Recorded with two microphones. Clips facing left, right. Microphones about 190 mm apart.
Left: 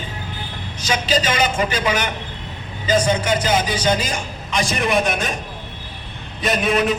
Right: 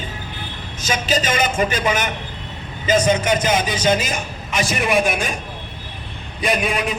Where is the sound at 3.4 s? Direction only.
25° right (ahead or behind).